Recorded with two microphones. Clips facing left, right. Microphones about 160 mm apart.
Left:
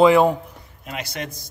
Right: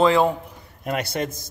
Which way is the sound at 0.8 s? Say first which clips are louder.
Right 7 dB; 50° right (ahead or behind).